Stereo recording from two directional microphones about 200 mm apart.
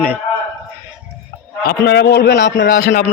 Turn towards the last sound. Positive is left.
turn(degrees=50)  # may be behind; listen again after turning